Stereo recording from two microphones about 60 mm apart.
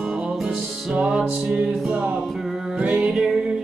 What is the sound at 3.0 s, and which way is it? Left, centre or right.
Music, centre.